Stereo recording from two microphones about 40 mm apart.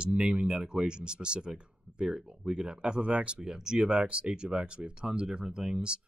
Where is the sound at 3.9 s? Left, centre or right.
Right.